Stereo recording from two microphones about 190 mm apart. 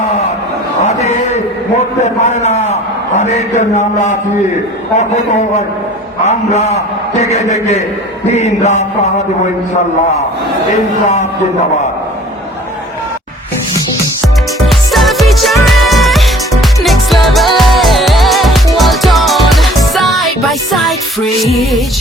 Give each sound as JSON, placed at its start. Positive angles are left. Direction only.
{"t": 0.9, "sound": "a sound", "side_deg": 35}
{"t": 2.0, "sound": "a man's voice", "side_deg": 35}
{"t": 14.7, "sound": "music", "side_deg": 0}